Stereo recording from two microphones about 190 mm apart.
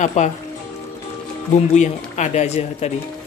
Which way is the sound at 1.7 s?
40° left (ahead or behind).